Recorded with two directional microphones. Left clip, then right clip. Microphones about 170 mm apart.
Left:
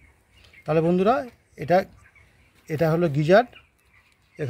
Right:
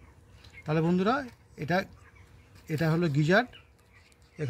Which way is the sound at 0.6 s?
35° left (ahead or behind).